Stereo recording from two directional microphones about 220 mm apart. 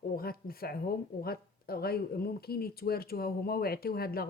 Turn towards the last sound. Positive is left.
turn(degrees=45)  # may be behind; listen again after turning